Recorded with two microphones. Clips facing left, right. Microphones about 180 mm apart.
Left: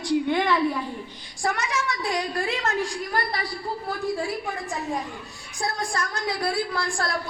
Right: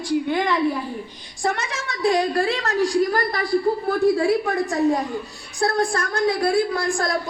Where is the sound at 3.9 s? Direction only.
75° right (ahead or behind).